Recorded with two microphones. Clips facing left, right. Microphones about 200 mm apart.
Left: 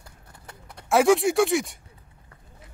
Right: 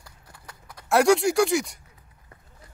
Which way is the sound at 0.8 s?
Centre (ahead or behind).